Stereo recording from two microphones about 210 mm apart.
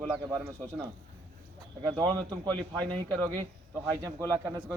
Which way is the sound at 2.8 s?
20° right (ahead or behind).